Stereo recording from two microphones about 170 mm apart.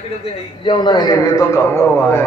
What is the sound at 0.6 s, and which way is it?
A man's voice, 25° left (ahead or behind).